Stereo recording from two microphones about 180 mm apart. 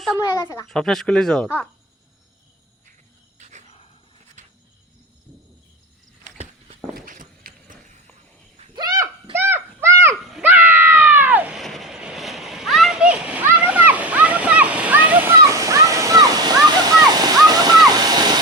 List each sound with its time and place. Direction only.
0.2 s speech: 20° left (ahead or behind)
0.7 s speech: centre (ahead or behind)
3.3 s a sound: 40° right (ahead or behind)
4.4 s cricket: 40° right (ahead or behind)
6.2 s walk: 40° right (ahead or behind)
6.9 s walk: 50° right (ahead or behind)
8.7 s a sound: 20° right (ahead or behind)
10.2 s cat: 5° right (ahead or behind); by 18.3 s 20° right (ahead or behind)